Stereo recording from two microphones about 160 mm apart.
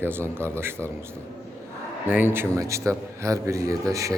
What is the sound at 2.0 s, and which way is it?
A man's voice, 10° right (ahead or behind).